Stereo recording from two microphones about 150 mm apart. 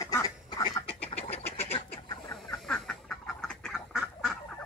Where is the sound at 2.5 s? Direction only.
5° left (ahead or behind).